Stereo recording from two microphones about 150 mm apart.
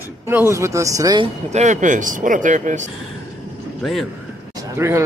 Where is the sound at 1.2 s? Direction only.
50° right (ahead or behind).